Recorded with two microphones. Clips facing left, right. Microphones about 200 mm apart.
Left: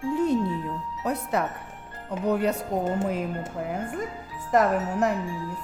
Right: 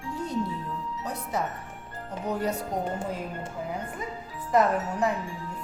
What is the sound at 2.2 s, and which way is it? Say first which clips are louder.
Music: left 5 dB; 65° left (ahead or behind).